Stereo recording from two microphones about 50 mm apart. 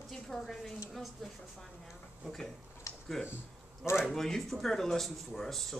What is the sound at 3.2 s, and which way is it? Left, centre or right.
A woman's voice, centre.